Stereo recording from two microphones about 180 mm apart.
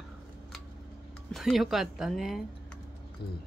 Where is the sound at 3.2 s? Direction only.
60° left (ahead or behind).